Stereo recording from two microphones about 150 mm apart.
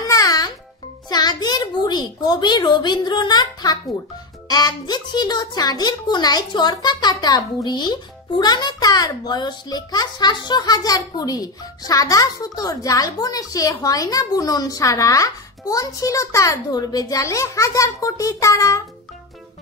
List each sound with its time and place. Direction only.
0.0 s music: 25° left (ahead or behind)
1.0 s a child's voice: 25° left (ahead or behind)